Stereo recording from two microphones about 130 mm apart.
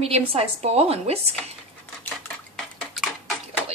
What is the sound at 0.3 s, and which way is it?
Speech, 50° right (ahead or behind).